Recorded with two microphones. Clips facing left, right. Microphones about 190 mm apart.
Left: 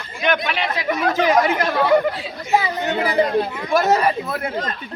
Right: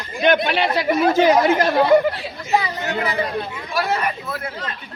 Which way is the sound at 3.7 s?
40° left (ahead or behind).